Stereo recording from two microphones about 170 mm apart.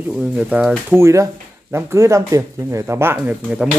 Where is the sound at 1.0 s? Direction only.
15° right (ahead or behind).